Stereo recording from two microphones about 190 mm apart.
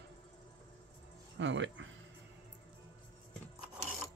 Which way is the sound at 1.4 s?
75° right (ahead or behind).